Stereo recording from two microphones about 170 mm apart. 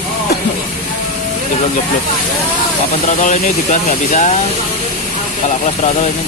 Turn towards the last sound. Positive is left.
turn(degrees=45)  # may be behind; listen again after turning